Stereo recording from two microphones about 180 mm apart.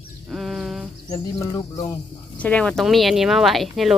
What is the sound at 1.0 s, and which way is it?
Speech, 20° left (ahead or behind).